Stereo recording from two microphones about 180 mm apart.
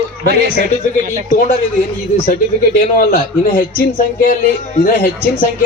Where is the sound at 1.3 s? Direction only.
50° left (ahead or behind).